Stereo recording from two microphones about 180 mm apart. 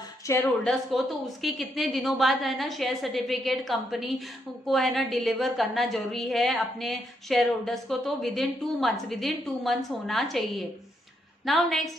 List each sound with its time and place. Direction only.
0.3 s speech: 15° left (ahead or behind)
0.7 s a woman's voice: centre (ahead or behind)